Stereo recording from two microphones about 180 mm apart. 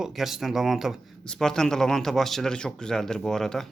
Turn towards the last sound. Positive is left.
turn(degrees=5)  # may be behind; listen again after turning